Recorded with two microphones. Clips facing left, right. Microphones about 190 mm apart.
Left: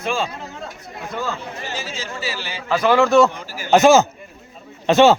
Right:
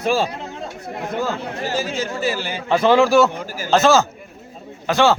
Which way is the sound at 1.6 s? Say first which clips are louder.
Right 9 dB; 45° right (ahead or behind).